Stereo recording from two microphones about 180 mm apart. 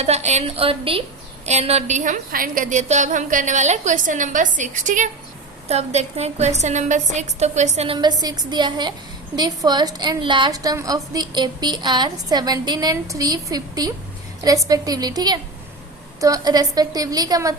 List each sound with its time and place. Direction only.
0.0 s a woman's voice: 35° right (ahead or behind)
8.0 s a woman's voice: 20° right (ahead or behind)